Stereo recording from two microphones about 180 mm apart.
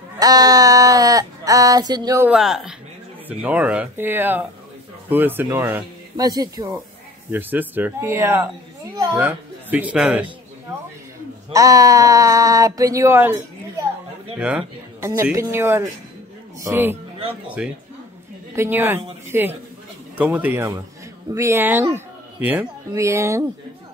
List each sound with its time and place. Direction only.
0.2 s speech: 20° right (ahead or behind)
2.2 s speech: centre (ahead or behind); by 6.7 s 20° right (ahead or behind)
7.2 s a child's voice: 10° right (ahead or behind)
11.5 s speech: 20° right (ahead or behind)
14.4 s speech: 10° right (ahead or behind)